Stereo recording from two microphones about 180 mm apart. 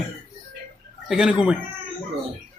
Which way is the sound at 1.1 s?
5° right (ahead or behind).